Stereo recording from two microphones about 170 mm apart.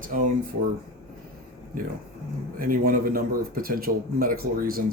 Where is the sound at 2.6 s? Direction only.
55° right (ahead or behind).